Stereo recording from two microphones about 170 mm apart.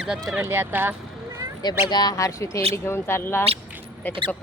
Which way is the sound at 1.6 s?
25° left (ahead or behind).